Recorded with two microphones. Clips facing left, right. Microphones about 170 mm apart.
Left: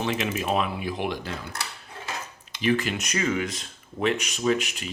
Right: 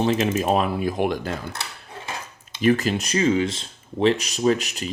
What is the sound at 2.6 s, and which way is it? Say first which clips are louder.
Speech: right 5 dB; 40° right (ahead or behind).